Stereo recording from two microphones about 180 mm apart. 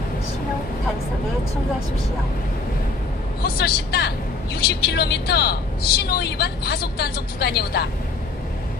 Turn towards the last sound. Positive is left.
turn(degrees=60)  # may be behind; listen again after turning